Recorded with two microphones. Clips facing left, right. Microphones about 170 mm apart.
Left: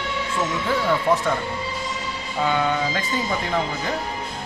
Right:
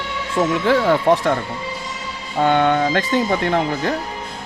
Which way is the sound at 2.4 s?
60° right (ahead or behind).